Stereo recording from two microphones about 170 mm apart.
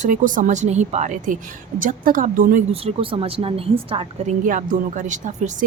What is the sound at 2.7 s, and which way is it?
A woman's voice, 35° right (ahead or behind).